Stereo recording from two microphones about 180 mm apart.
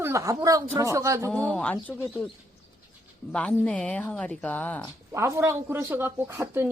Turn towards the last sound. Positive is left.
turn(degrees=-15)  # may be behind; listen again after turning